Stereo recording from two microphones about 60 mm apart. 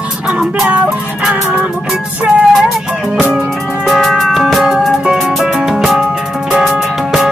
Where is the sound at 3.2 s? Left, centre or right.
Centre.